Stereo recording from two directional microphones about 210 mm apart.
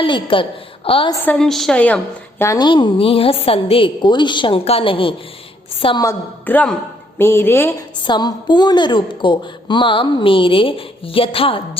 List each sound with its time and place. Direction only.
0.0 s a woman's voice: 25° left (ahead or behind)
1.2 s a woman's voice: 5° left (ahead or behind)
2.4 s a woman's voice: 15° left (ahead or behind)